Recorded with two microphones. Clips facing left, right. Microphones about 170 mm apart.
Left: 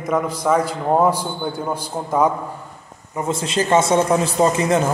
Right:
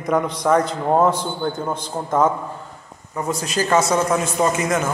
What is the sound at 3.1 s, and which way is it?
A man's voice, 25° left (ahead or behind).